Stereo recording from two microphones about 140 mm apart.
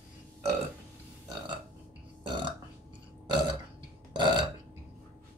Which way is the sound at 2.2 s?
35° right (ahead or behind).